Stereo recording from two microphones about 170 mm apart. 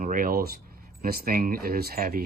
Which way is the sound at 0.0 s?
55° right (ahead or behind).